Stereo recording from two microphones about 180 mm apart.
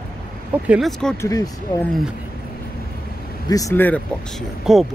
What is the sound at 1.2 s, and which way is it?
Speech, 20° left (ahead or behind).